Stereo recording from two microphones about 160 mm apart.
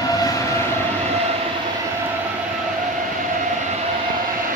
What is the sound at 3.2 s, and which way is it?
Vehicle, 50° right (ahead or behind).